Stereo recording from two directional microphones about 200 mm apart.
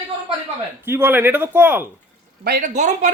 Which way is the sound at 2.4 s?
50° right (ahead or behind).